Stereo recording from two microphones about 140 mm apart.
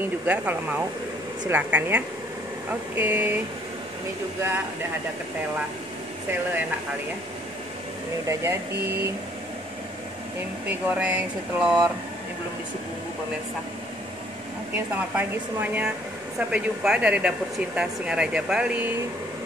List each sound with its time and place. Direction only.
0.3 s speech: 10° right (ahead or behind)
8.3 s speech: 20° right (ahead or behind)
10.7 s speech: 10° right (ahead or behind)
15.1 s speech: 10° right (ahead or behind)